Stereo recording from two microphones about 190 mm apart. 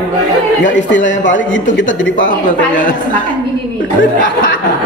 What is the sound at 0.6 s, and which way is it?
Speech, 75° left (ahead or behind).